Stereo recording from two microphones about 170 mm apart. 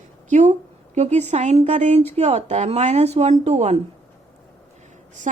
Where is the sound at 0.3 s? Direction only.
45° right (ahead or behind).